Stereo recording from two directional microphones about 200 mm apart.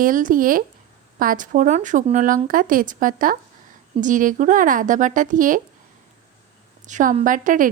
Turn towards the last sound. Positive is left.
turn(degrees=-40)  # may be behind; listen again after turning